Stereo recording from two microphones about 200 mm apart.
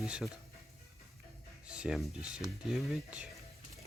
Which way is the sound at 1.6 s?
5° right (ahead or behind).